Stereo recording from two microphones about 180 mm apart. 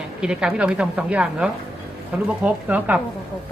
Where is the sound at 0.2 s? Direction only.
5° right (ahead or behind).